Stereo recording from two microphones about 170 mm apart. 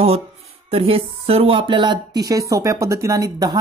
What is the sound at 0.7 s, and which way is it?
Speech, 35° right (ahead or behind).